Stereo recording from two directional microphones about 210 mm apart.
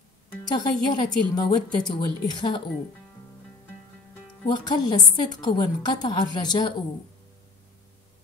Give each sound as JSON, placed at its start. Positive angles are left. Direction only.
{"t": 0.5, "sound": "a woman's voice", "side_deg": 20}
{"t": 4.5, "sound": "a woman's voice", "side_deg": 20}